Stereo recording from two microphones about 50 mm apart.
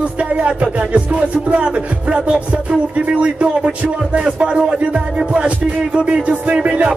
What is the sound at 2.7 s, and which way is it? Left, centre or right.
Music, right.